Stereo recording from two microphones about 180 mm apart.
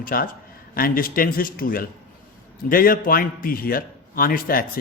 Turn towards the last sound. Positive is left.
turn(degrees=55)  # may be behind; listen again after turning